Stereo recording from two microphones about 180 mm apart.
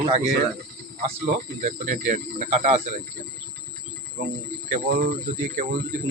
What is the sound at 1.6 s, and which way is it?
Speech, 45° right (ahead or behind).